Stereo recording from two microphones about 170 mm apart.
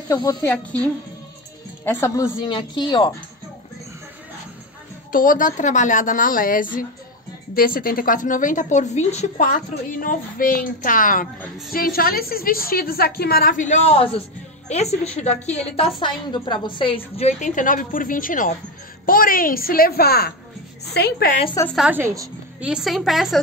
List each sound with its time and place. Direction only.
0.1 s speech: 20° left (ahead or behind)
1.9 s a woman's voice: 15° left (ahead or behind)
5.1 s a woman's voice: 55° left (ahead or behind)
21.7 s a woman's voice: 10° right (ahead or behind)
22.6 s a woman's voice: 5° right (ahead or behind)